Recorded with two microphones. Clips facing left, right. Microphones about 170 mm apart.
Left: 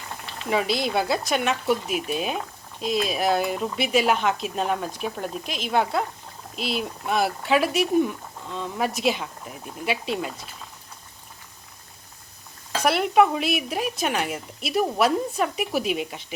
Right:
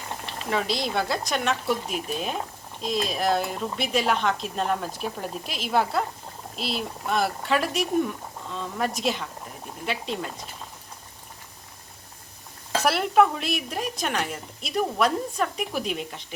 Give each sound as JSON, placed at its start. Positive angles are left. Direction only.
{"t": 0.5, "sound": "speech", "side_deg": 5}
{"t": 12.8, "sound": "speech", "side_deg": 0}